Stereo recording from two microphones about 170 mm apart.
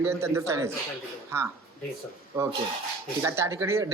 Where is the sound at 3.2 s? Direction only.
15° right (ahead or behind).